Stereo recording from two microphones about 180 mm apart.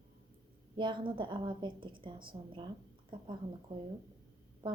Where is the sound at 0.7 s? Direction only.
25° right (ahead or behind).